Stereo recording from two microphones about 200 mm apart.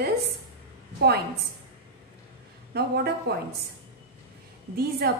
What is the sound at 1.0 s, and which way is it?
Speech, 55° right (ahead or behind).